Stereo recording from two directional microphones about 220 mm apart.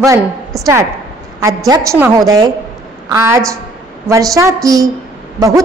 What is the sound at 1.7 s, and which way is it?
A woman's voice, 15° right (ahead or behind).